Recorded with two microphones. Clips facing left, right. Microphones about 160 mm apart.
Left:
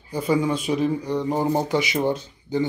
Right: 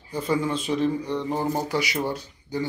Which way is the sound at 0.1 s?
10° left (ahead or behind).